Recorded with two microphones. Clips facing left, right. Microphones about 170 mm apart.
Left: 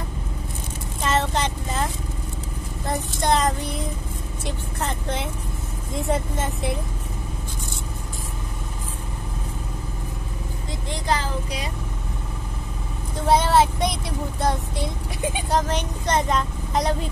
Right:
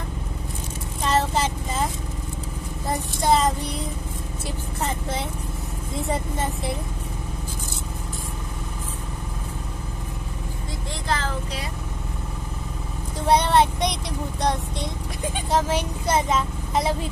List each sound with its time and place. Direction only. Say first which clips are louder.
1.0 s vehicle: right 1 dB; centre (ahead or behind)
2.9 s child singing: right 1 dB; centre (ahead or behind)
4.5 s vehicle: even; 5° right (ahead or behind)
6.0 s speech: left 2 dB; centre (ahead or behind)
10.9 s vehicle: left 2 dB; 15° left (ahead or behind)
13.2 s vehicle: even; centre (ahead or behind)